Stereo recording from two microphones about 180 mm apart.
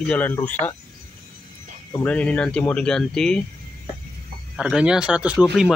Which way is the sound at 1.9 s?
10° left (ahead or behind).